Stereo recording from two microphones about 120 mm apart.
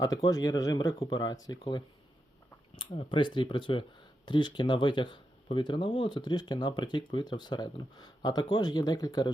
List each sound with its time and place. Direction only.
0.0 s speech: 30° left (ahead or behind)
2.9 s speech: 45° left (ahead or behind)